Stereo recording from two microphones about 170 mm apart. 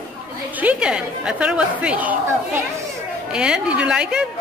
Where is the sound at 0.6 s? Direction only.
5° right (ahead or behind).